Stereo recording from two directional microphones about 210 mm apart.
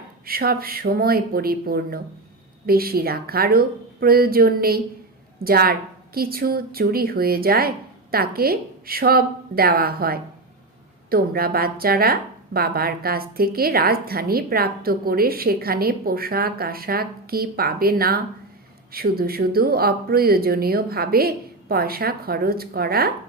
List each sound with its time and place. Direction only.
0.3 s a woman's voice: 45° right (ahead or behind)